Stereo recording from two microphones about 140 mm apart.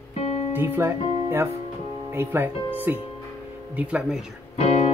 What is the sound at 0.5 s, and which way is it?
Speech, 15° right (ahead or behind).